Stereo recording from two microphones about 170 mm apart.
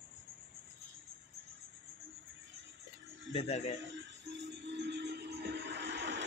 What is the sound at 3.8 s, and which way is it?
Music, 90° right.